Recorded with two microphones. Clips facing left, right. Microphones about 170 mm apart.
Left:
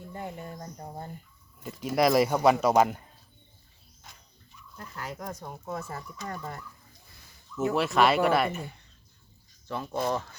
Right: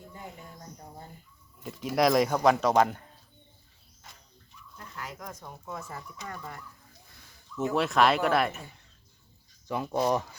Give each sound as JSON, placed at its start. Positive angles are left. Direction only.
{"t": 0.1, "sound": "speech", "side_deg": 60}
{"t": 1.6, "sound": "speech", "side_deg": 0}
{"t": 4.9, "sound": "speech", "side_deg": 35}
{"t": 7.2, "sound": "speech", "side_deg": 0}
{"t": 9.6, "sound": "speech", "side_deg": -15}